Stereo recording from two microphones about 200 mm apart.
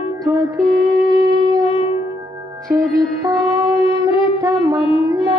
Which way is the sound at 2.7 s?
15° right (ahead or behind).